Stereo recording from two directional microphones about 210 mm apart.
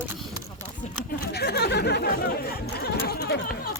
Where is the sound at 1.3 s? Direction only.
50° left (ahead or behind).